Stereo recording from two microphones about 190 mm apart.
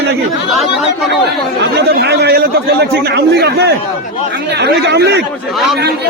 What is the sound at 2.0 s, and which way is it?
A man's voice, 60° right (ahead or behind).